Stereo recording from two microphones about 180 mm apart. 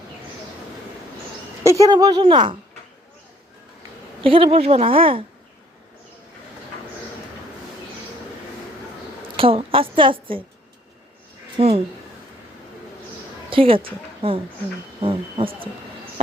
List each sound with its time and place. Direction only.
1.8 s a woman's voice: 20° right (ahead or behind)
4.2 s a woman's voice: 30° right (ahead or behind)
9.3 s a woman's voice: 30° right (ahead or behind)
11.5 s a woman's voice: 35° right (ahead or behind)
13.5 s a woman's voice: 30° right (ahead or behind)